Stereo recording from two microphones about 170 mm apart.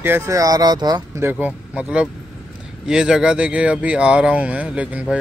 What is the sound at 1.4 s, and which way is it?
Speech, 5° right (ahead or behind).